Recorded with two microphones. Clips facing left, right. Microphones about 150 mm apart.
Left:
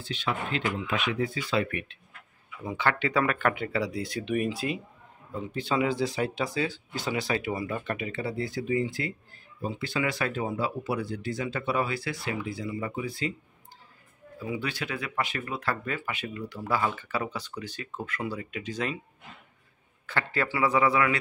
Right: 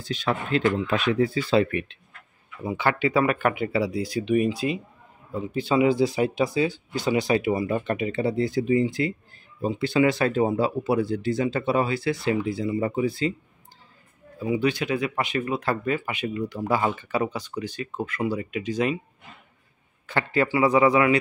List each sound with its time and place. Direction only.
0.0 s speech: 40° right (ahead or behind)
1.5 s speech: 30° right (ahead or behind)
2.6 s speech: 10° right (ahead or behind)
5.3 s speech: 10° right (ahead or behind); by 13.3 s 30° right (ahead or behind)
14.4 s speech: 20° right (ahead or behind)
20.1 s speech: 15° right (ahead or behind)